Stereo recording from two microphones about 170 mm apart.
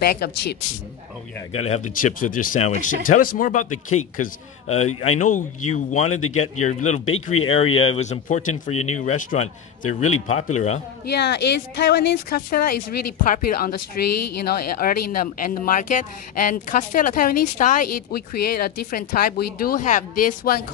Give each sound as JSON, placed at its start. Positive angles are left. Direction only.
{"t": 0.0, "sound": "speech", "side_deg": 65}
{"t": 1.5, "sound": "speech", "side_deg": 35}
{"t": 2.0, "sound": "speech", "side_deg": 50}
{"t": 11.1, "sound": "speech", "side_deg": 75}